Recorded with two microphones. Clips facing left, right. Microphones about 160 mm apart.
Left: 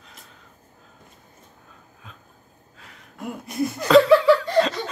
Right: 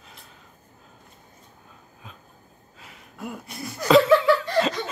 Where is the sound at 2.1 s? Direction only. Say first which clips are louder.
Right 2 dB; centre (ahead or behind).